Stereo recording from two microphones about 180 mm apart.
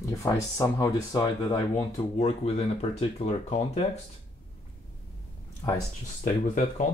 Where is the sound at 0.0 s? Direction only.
15° left (ahead or behind).